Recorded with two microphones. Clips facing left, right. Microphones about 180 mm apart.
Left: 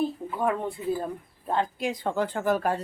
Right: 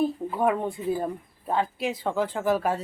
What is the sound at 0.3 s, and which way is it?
Speech, 15° right (ahead or behind).